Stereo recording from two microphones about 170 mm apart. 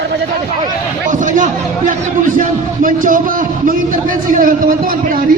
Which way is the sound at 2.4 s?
50° right (ahead or behind).